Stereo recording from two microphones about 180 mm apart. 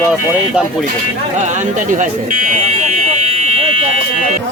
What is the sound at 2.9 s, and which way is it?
Fire alarm, 40° right (ahead or behind).